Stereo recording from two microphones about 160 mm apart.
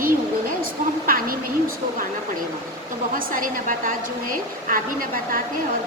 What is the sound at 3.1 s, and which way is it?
A woman's voice, 60° right (ahead or behind).